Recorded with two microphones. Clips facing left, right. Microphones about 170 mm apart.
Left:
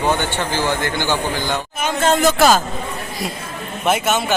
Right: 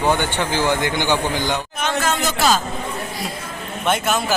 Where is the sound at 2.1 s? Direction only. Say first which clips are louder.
Left 8 dB; 50° left (ahead or behind).